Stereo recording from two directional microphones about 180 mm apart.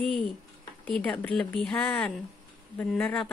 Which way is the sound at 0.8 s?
5° left (ahead or behind).